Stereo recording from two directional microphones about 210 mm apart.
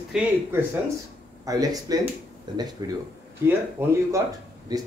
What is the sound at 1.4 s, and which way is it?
Speech, 15° right (ahead or behind).